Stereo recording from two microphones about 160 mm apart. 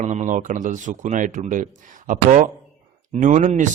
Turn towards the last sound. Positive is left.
turn(degrees=-50)  # may be behind; listen again after turning